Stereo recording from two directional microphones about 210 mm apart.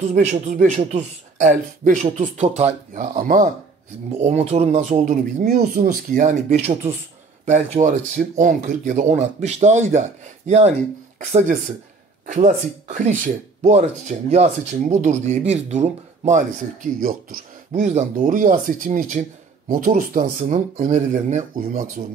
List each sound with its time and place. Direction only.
0.1 s speech: 35° right (ahead or behind)